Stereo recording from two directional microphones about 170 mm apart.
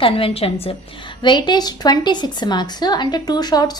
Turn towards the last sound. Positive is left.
turn(degrees=25)  # may be behind; listen again after turning